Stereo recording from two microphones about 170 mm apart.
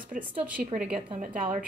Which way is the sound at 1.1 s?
50° right (ahead or behind).